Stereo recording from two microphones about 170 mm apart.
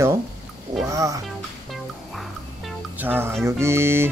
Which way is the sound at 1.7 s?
Centre (ahead or behind).